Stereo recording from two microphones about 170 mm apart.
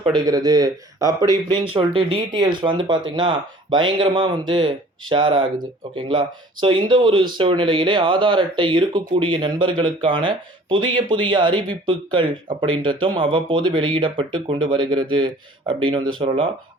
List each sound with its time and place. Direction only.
0.0 s speech: 25° right (ahead or behind)
1.7 s speech: 30° right (ahead or behind)